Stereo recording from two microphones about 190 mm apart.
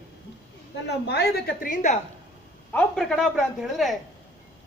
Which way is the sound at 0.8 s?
60° left (ahead or behind).